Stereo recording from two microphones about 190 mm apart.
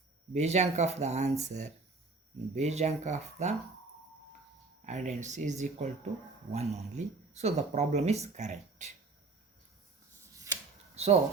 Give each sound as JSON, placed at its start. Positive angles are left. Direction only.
{"t": 0.3, "sound": "speech", "side_deg": -35}
{"t": 4.9, "sound": "speech", "side_deg": -40}
{"t": 10.3, "sound": "a sound", "side_deg": -15}
{"t": 10.9, "sound": "speech", "side_deg": -35}